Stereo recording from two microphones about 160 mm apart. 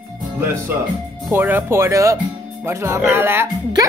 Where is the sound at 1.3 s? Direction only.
10° right (ahead or behind).